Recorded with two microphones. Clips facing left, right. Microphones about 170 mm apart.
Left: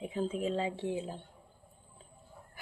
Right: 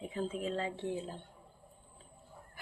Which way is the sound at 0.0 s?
15° left (ahead or behind).